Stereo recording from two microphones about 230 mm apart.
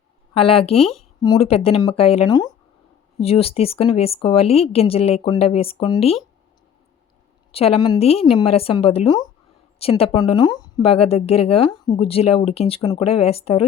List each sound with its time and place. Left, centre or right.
0.3 s speech: left
0.8 s speech: centre
1.2 s speech: left
7.5 s speech: left